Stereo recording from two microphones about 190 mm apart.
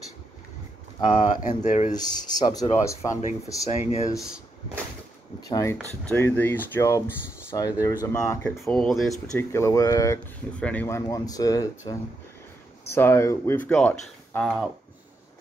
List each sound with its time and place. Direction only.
1.0 s speech: 35° left (ahead or behind)
2.0 s speech: 20° left (ahead or behind)
3.7 s speech: 35° left (ahead or behind)
5.5 s speech: 15° left (ahead or behind)
8.6 s speech: centre (ahead or behind)
9.3 s speech: 15° left (ahead or behind)